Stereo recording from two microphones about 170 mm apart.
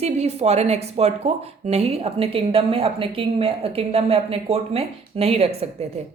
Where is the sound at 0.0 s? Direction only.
40° right (ahead or behind).